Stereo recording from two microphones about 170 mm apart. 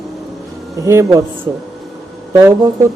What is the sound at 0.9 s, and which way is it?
Speech, 15° right (ahead or behind).